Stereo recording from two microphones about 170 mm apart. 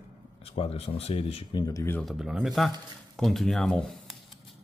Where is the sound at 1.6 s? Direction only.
15° left (ahead or behind).